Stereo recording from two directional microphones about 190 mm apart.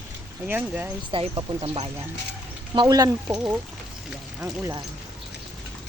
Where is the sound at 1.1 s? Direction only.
30° right (ahead or behind).